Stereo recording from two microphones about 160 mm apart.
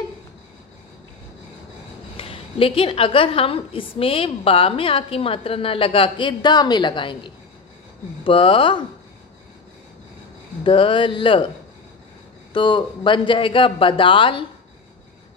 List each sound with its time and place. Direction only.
2.1 s a woman's voice: 35° left (ahead or behind)
10.6 s a woman's voice: 30° left (ahead or behind)
12.5 s a woman's voice: 30° left (ahead or behind)